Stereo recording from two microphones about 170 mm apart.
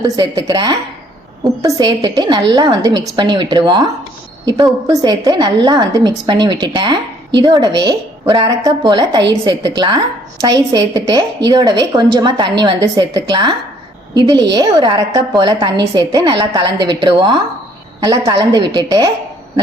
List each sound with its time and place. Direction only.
0.2 s a woman's voice: 25° right (ahead or behind)